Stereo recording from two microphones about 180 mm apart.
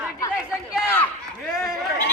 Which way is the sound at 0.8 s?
10° left (ahead or behind).